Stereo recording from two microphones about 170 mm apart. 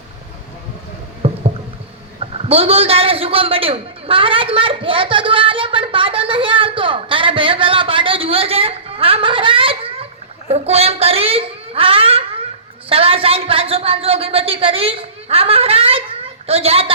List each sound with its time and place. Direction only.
1.2 s rowboat: 35° right (ahead or behind)
2.1 s a sound: 35° right (ahead or behind)
10.5 s a child's voice: 35° right (ahead or behind)